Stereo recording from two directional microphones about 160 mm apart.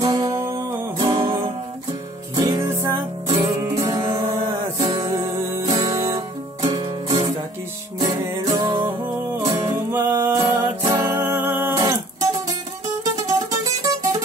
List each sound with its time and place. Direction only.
0.0 s music: 20° right (ahead or behind)
6.6 s music: 30° right (ahead or behind)